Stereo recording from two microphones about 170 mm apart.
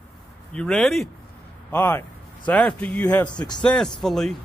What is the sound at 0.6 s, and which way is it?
Speech, 5° left (ahead or behind).